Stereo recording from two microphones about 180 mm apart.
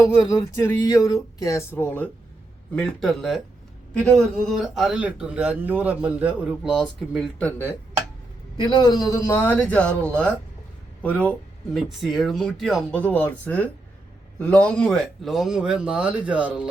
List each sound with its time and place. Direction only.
0.0 s a man's voice: 15° left (ahead or behind); by 7.3 s 5° right (ahead or behind)
7.3 s speech: 10° left (ahead or behind)
8.5 s a man's voice: 25° left (ahead or behind); by 16.6 s 5° right (ahead or behind)